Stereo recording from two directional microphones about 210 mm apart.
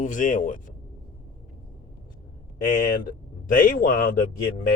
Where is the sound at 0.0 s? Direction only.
40° left (ahead or behind).